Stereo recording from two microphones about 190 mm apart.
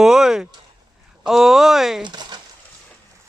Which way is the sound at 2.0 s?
25° right (ahead or behind).